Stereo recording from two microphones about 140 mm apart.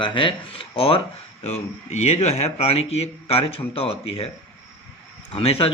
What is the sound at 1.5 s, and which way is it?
Speech, 50° left (ahead or behind).